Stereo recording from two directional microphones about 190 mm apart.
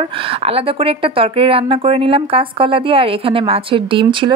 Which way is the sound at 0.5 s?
30° right (ahead or behind).